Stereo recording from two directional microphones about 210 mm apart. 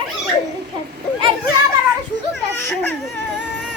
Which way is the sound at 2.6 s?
10° left (ahead or behind).